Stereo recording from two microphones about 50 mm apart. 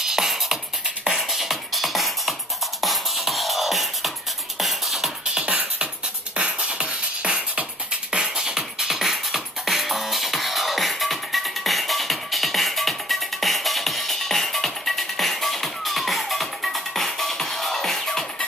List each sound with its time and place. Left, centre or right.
0.0 s music: centre
5.3 s music: right; by 18.2 s centre